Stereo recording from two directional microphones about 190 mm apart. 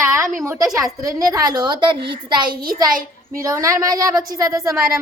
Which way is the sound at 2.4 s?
50° right (ahead or behind).